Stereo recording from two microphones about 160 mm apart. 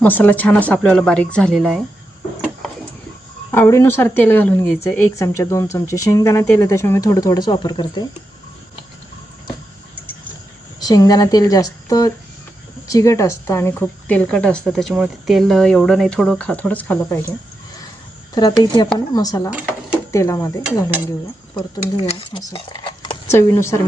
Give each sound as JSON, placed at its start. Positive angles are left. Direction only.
{"t": 0.0, "sound": "speech", "side_deg": 10}
{"t": 3.5, "sound": "speech", "side_deg": 15}
{"t": 10.8, "sound": "speech", "side_deg": 25}
{"t": 18.3, "sound": "speech", "side_deg": 25}
{"t": 19.5, "sound": "speech", "side_deg": -5}
{"t": 20.1, "sound": "speech", "side_deg": 20}
{"t": 21.5, "sound": "speech", "side_deg": 40}
{"t": 22.3, "sound": "speech", "side_deg": 25}
{"t": 23.3, "sound": "speech", "side_deg": 15}